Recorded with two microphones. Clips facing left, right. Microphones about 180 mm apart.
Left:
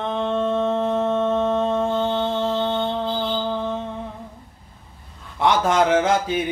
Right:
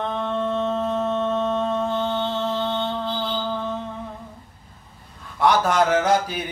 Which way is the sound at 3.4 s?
15° left (ahead or behind).